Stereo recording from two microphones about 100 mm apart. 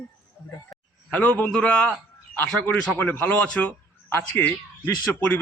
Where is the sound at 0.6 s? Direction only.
15° left (ahead or behind).